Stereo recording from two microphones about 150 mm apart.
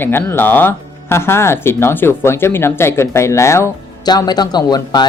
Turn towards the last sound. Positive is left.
turn(degrees=25)  # may be behind; listen again after turning